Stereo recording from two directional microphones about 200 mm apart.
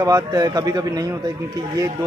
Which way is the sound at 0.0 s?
15° right (ahead or behind).